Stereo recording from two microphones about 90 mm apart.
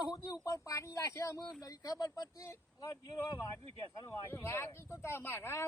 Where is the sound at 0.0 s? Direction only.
45° left (ahead or behind).